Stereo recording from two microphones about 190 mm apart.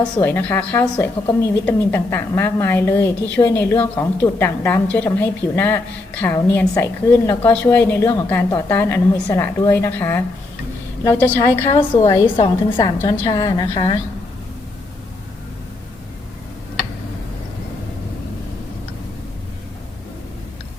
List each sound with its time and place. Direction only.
0.0 s a woman's voice: 10° left (ahead or behind)
11.7 s a woman's voice: 25° left (ahead or behind)